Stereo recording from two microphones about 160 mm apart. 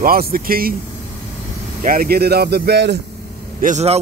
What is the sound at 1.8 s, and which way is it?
Speech, 65° right (ahead or behind).